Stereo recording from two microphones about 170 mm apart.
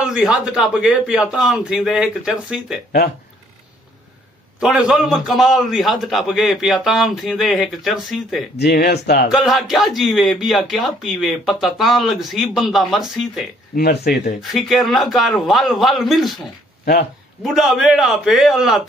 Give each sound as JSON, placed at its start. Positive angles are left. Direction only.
{"t": 0.0, "sound": "a man's voice", "side_deg": -5}
{"t": 4.6, "sound": "a man's voice", "side_deg": -5}
{"t": 8.5, "sound": "speech", "side_deg": 70}
{"t": 9.3, "sound": "a man's voice", "side_deg": 0}
{"t": 13.7, "sound": "speech", "side_deg": 70}
{"t": 14.5, "sound": "a man's voice", "side_deg": 0}
{"t": 16.8, "sound": "speech", "side_deg": 70}
{"t": 17.4, "sound": "a man's voice", "side_deg": 0}